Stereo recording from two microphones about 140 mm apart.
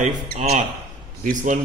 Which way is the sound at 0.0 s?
55° right (ahead or behind).